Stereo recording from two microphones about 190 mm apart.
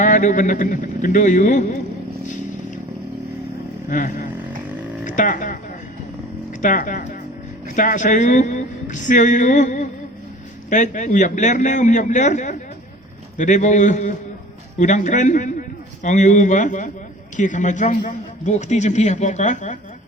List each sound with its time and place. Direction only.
0.0 s a man's voice: 40° left (ahead or behind)
3.8 s speech: 45° left (ahead or behind)
6.6 s a man's voice: 45° left (ahead or behind)